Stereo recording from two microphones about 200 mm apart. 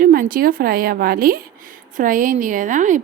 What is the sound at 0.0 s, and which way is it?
Speech, 45° right (ahead or behind).